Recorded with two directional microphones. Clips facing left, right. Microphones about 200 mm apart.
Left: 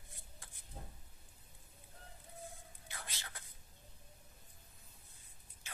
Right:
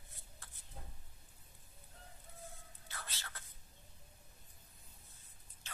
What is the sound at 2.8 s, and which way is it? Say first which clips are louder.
Whispering: even; 15° left (ahead or behind).